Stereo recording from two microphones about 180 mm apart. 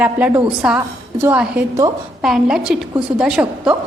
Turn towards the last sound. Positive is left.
turn(degrees=-5)  # may be behind; listen again after turning